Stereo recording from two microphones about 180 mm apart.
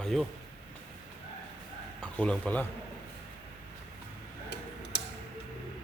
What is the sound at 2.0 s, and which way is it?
Speech, 5° left (ahead or behind).